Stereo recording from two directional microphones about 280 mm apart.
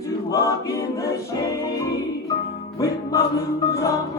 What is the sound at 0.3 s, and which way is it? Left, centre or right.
Music, centre.